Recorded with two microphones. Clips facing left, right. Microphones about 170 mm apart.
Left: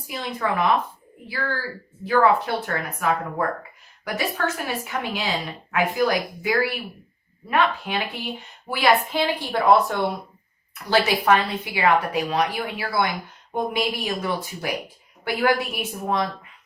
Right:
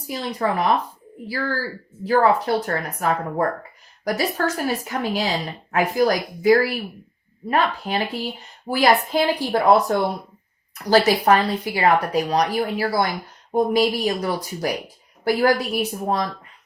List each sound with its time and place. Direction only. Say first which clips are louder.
0.1 s speech: right 3 dB; 40° right (ahead or behind)
2.0 s speech: right 1 dB; 40° right (ahead or behind)